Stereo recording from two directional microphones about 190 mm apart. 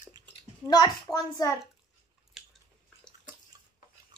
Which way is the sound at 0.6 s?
20° left (ahead or behind).